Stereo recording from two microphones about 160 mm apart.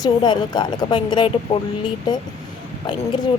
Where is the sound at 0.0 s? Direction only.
25° left (ahead or behind).